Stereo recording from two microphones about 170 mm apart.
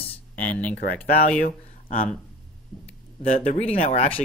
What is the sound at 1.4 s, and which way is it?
Speech, 50° left (ahead or behind).